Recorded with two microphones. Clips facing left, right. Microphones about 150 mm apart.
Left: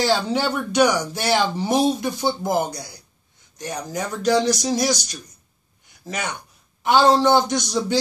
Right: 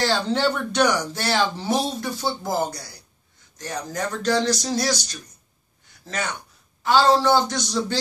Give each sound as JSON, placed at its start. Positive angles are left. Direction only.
{"t": 0.0, "sound": "speech", "side_deg": 10}